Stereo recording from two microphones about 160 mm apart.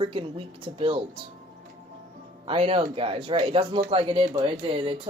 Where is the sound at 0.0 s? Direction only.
35° right (ahead or behind).